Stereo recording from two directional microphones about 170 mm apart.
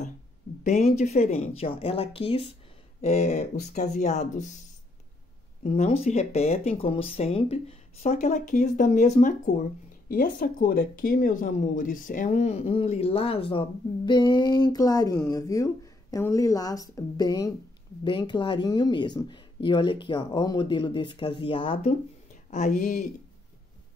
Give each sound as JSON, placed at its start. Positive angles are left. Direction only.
{"t": 0.7, "sound": "speech", "side_deg": 40}
{"t": 5.6, "sound": "speech", "side_deg": 40}
{"t": 22.5, "sound": "speech", "side_deg": 45}